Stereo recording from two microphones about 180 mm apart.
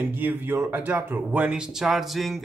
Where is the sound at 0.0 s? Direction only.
10° right (ahead or behind).